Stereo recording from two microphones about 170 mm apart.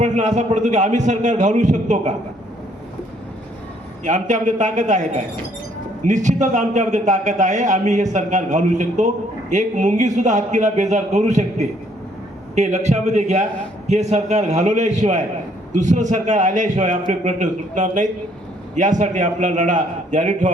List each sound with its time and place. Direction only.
0.0 s a man's voice: 45° right (ahead or behind)
4.0 s a man's voice: 45° right (ahead or behind)